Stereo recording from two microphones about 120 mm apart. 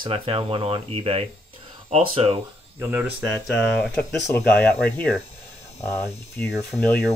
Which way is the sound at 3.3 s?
10° left (ahead or behind).